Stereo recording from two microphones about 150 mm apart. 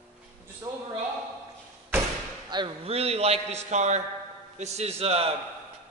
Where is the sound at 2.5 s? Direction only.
35° right (ahead or behind).